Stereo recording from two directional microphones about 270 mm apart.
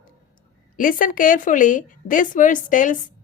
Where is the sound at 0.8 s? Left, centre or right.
Left.